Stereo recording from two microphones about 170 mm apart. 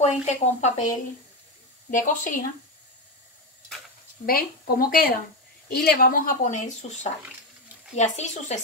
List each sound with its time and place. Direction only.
0.0 s speech: 40° left (ahead or behind)
4.3 s speech: 60° left (ahead or behind); by 8.5 s 40° left (ahead or behind)